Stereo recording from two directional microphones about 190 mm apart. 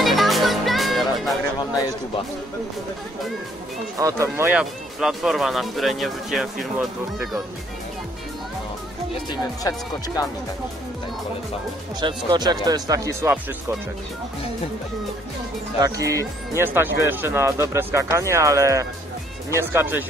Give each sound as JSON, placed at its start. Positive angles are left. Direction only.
{"t": 0.0, "sound": "music", "side_deg": 0}
{"t": 1.6, "sound": "a sound", "side_deg": 20}
{"t": 4.0, "sound": "speech", "side_deg": -15}
{"t": 9.3, "sound": "speech", "side_deg": 20}
{"t": 12.0, "sound": "speech", "side_deg": -25}
{"t": 15.8, "sound": "speech", "side_deg": -15}